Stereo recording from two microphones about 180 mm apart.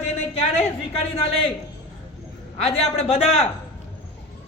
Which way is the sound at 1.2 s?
30° left (ahead or behind).